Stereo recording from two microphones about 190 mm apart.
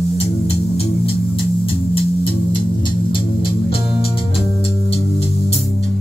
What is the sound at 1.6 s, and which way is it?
Music, 30° left (ahead or behind).